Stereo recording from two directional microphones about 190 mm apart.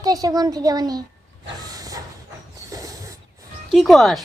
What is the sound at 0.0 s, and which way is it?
A woman's voice, 20° right (ahead or behind).